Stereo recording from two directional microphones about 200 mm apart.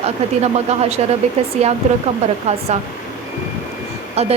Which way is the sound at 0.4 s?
30° right (ahead or behind).